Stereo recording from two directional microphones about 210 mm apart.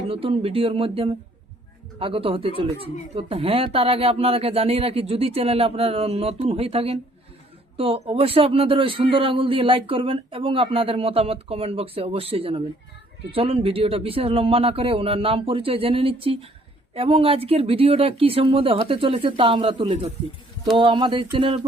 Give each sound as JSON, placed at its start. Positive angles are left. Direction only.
{"t": 0.1, "sound": "a man's voice", "side_deg": -25}